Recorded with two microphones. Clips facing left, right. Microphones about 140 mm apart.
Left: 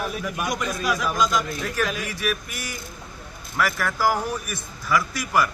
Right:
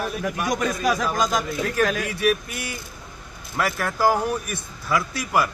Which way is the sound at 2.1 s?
30° right (ahead or behind).